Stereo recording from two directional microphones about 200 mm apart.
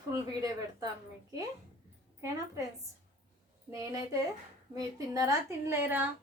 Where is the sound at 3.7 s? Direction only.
15° right (ahead or behind).